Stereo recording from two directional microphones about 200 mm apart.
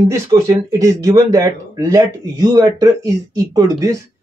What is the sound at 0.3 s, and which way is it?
Speech, 20° right (ahead or behind).